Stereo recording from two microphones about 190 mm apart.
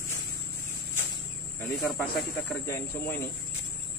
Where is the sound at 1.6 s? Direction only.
5° left (ahead or behind).